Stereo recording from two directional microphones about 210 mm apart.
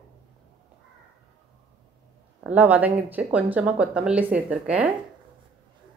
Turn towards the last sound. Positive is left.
turn(degrees=-5)  # may be behind; listen again after turning